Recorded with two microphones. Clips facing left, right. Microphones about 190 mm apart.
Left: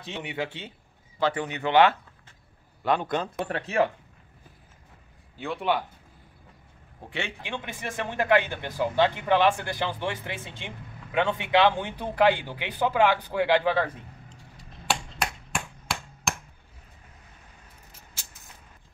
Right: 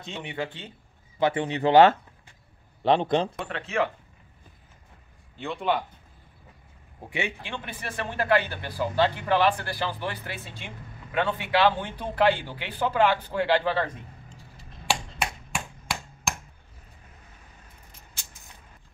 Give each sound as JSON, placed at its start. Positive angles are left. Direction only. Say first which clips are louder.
{"t": 0.1, "sound": "speech", "louder": "left 1 dB", "side_deg": 10}
{"t": 1.2, "sound": "speech", "louder": "right 3 dB", "side_deg": -25}
{"t": 2.8, "sound": "a man's voice", "louder": "right 4 dB", "side_deg": -25}
{"t": 3.4, "sound": "speech", "louder": "left 2 dB", "side_deg": 40}
{"t": 5.4, "sound": "a man's voice", "louder": "even", "side_deg": 5}
{"t": 7.1, "sound": "a man's voice", "louder": "right 3 dB", "side_deg": -10}
{"t": 7.4, "sound": "speech", "louder": "left 2 dB", "side_deg": 15}
{"t": 14.9, "sound": "a sound", "louder": "even", "side_deg": 0}